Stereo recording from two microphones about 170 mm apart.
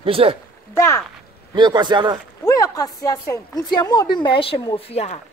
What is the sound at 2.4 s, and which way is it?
A woman's voice, 20° left (ahead or behind).